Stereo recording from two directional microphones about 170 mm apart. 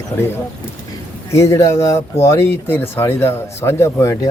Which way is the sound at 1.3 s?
15° left (ahead or behind).